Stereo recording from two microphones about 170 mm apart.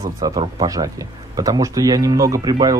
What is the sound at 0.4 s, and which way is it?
Speech, 25° right (ahead or behind).